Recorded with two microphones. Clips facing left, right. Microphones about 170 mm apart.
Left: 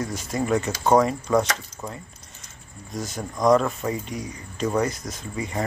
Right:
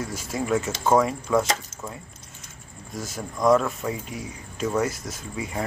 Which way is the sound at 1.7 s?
45° right (ahead or behind).